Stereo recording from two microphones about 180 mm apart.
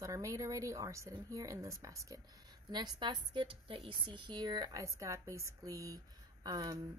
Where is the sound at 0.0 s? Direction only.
20° right (ahead or behind).